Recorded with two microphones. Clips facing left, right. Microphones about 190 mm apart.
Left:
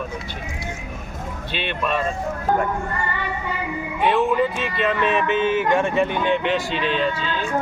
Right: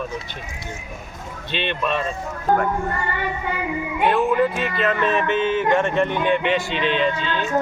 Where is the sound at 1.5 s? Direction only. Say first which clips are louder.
Right 1 dB; 5° left (ahead or behind).